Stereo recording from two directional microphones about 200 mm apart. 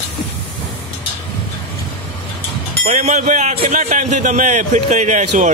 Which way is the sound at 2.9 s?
35° right (ahead or behind).